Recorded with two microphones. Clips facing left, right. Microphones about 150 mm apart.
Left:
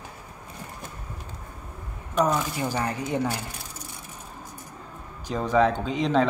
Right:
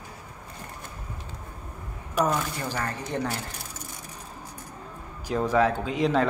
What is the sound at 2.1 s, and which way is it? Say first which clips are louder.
Speech: left 2 dB; centre (ahead or behind).